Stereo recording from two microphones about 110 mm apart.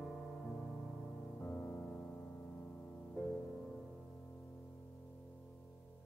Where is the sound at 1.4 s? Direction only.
20° left (ahead or behind).